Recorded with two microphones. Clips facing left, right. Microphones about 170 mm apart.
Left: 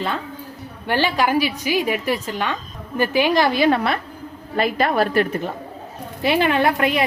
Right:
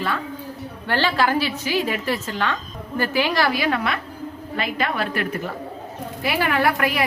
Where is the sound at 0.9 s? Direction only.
15° left (ahead or behind); by 5.4 s 35° left (ahead or behind).